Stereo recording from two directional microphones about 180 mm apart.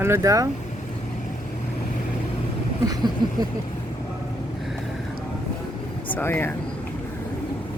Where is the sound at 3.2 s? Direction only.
25° right (ahead or behind).